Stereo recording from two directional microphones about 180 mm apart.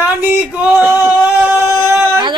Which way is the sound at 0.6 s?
10° right (ahead or behind).